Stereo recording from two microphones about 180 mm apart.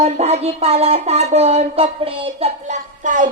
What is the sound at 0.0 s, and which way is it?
Speech, 35° right (ahead or behind).